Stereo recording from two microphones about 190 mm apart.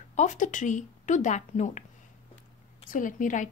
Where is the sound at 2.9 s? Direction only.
45° left (ahead or behind).